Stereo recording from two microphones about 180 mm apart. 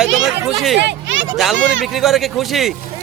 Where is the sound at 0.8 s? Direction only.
80° right.